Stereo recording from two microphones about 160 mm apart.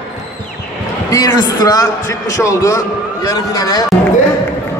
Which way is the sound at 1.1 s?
25° left (ahead or behind).